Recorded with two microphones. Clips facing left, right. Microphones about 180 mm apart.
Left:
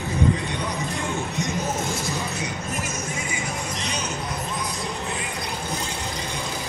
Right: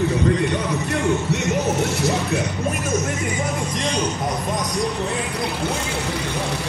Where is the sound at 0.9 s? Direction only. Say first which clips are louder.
Right 7 dB; 70° right (ahead or behind).